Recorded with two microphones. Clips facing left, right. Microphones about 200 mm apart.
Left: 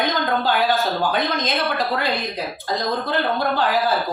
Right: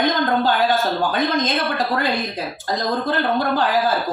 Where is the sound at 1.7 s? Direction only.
45° right (ahead or behind).